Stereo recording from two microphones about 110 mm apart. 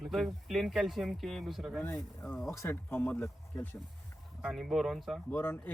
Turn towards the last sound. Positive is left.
turn(degrees=15)  # may be behind; listen again after turning